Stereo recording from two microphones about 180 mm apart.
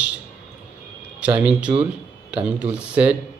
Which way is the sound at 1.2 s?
5° right (ahead or behind).